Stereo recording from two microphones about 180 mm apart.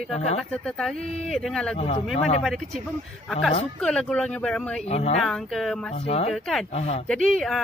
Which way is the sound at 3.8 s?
5° left (ahead or behind).